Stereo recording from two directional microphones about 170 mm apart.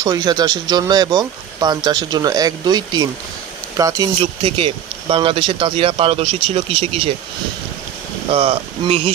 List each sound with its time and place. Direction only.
0.0 s speech: 20° right (ahead or behind)
8.3 s speech: 35° right (ahead or behind)